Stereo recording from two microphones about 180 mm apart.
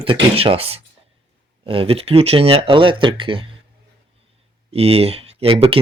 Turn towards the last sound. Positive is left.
turn(degrees=-30)  # may be behind; listen again after turning